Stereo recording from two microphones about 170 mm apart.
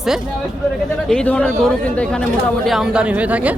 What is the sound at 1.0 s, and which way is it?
A man's voice, 5° left (ahead or behind).